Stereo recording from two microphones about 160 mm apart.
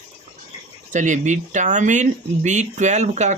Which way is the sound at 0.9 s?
50° right (ahead or behind).